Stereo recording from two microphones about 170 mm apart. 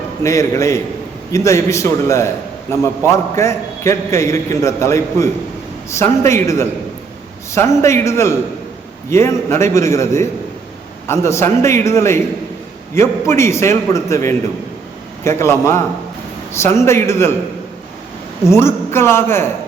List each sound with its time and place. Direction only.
0.2 s a man's voice: 15° left (ahead or behind)
18.4 s a man's voice: 15° left (ahead or behind)